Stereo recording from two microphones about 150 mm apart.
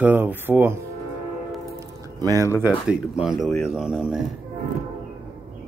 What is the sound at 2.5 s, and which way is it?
Speech, 10° right (ahead or behind).